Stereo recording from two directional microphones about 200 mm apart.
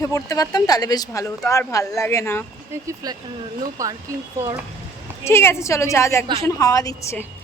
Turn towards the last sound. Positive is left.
turn(degrees=15)  # may be behind; listen again after turning